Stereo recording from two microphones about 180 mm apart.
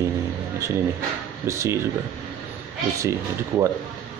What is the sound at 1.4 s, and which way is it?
Speech, 15° right (ahead or behind).